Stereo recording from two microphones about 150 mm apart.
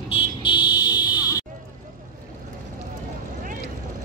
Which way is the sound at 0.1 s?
35° left (ahead or behind).